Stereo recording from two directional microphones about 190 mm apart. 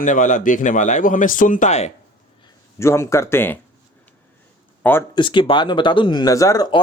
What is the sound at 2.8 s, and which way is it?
Speech, 15° left (ahead or behind).